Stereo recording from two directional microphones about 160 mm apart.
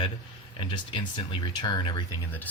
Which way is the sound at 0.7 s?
30° left (ahead or behind).